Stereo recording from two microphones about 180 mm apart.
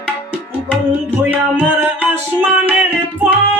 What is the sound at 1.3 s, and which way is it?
Music, 10° right (ahead or behind).